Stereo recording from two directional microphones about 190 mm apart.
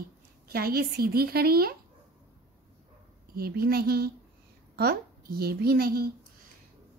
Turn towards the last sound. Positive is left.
turn(degrees=-55)  # may be behind; listen again after turning